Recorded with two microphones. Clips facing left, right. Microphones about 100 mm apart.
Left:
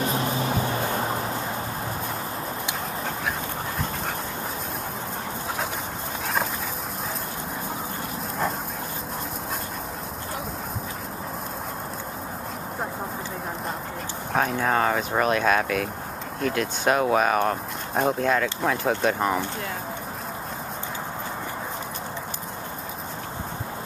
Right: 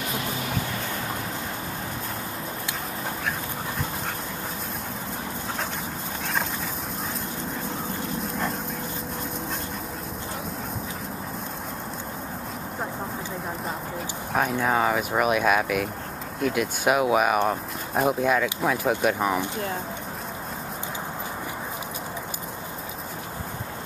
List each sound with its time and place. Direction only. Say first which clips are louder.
0.0 s music: left 5 dB; 30° left (ahead or behind)
8.2 s dog: left 3 dB; centre (ahead or behind)
14.3 s speech: even; centre (ahead or behind)